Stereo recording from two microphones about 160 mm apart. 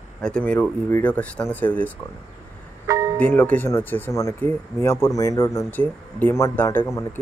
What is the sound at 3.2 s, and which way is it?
Speech, 10° left (ahead or behind).